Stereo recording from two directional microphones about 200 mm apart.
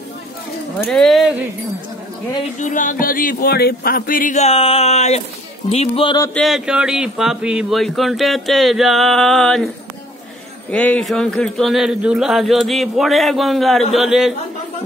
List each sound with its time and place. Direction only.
0.8 s speech: centre (ahead or behind)
2.6 s speech: 40° left (ahead or behind)
5.7 s music: 30° left (ahead or behind)
6.3 s speech: centre (ahead or behind)
10.7 s speech: 5° left (ahead or behind)